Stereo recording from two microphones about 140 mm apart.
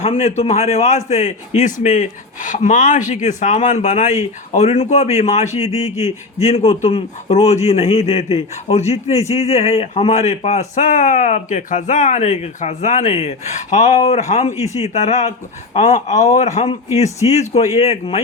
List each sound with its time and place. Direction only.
0.0 s a man's voice: 50° left (ahead or behind)